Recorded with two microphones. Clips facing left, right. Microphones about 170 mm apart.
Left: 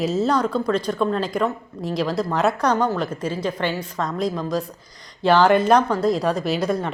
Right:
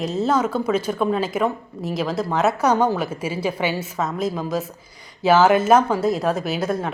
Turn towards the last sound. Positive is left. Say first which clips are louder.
# left 1 dB
turn(degrees=0)  # may be behind; listen again after turning